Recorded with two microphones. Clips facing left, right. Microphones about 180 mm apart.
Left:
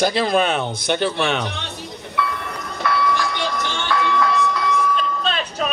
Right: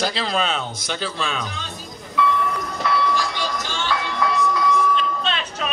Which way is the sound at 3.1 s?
60° left (ahead or behind).